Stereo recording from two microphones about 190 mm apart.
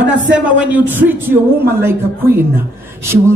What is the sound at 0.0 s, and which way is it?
Speech, 5° right (ahead or behind).